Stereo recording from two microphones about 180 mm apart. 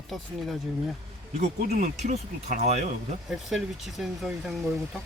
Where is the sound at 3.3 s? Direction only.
Centre (ahead or behind).